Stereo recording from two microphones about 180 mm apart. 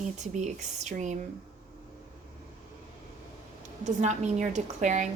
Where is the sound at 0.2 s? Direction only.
40° right (ahead or behind).